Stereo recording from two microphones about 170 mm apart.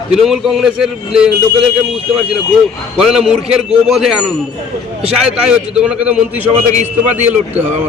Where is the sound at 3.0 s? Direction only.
Centre (ahead or behind).